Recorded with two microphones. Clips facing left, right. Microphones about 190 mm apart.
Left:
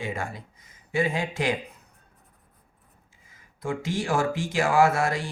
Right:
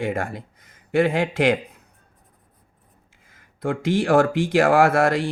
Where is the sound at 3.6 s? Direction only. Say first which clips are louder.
Right 7 dB; 60° right (ahead or behind).